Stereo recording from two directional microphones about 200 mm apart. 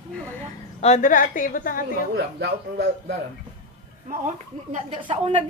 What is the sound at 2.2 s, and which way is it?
Speech, 55° right (ahead or behind).